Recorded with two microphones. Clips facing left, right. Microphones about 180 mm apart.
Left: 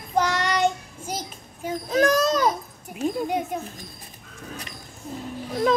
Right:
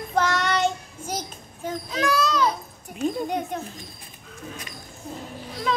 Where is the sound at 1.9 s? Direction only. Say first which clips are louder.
Left 4 dB; 45° left (ahead or behind).